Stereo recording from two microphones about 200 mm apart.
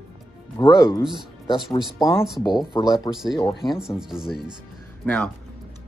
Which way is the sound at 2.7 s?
15° left (ahead or behind).